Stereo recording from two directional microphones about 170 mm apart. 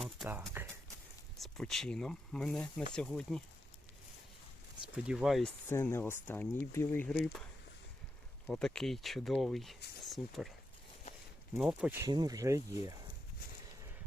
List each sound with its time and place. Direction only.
0.6 s a sound: 10° right (ahead or behind)
1.4 s speech: centre (ahead or behind)
5.0 s speech: centre (ahead or behind)
5.6 s speech: 15° left (ahead or behind)
8.4 s speech: 5° left (ahead or behind)
11.6 s speech: 5° right (ahead or behind)
12.0 s speech: 20° right (ahead or behind)